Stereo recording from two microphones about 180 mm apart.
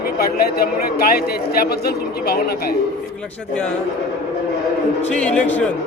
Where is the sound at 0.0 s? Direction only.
55° left (ahead or behind).